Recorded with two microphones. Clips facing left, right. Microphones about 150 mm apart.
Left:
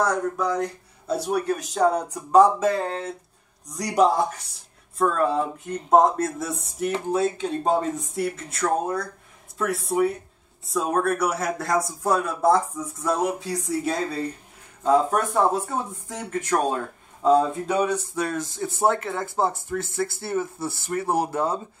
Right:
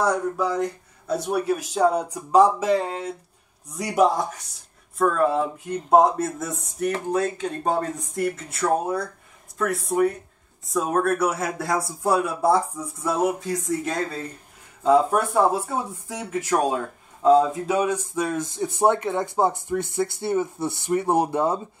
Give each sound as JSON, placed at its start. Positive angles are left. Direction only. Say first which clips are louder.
{"t": 0.0, "sound": "speech", "louder": "right 1 dB", "side_deg": -10}